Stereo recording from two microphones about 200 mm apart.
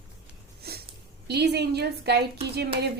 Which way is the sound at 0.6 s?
50° right (ahead or behind).